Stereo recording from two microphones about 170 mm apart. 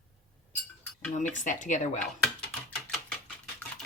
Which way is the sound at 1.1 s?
45° left (ahead or behind).